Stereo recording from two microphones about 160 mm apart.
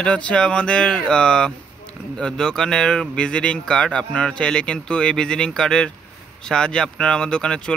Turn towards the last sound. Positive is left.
turn(degrees=5)  # may be behind; listen again after turning